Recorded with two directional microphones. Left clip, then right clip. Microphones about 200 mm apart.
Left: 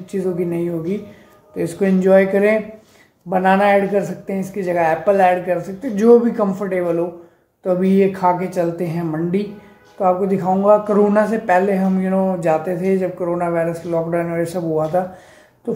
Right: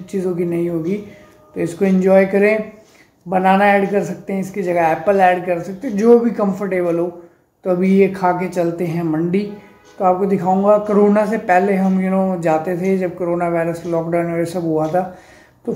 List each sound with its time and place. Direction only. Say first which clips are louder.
0.0 s a man's voice: right 1 dB; 5° left (ahead or behind)